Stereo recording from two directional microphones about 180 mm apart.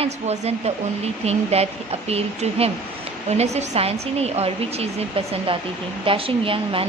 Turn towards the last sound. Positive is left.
turn(degrees=-30)  # may be behind; listen again after turning